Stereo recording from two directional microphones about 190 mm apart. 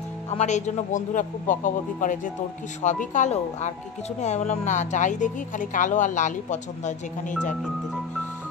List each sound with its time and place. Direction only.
0.3 s speech: 35° left (ahead or behind)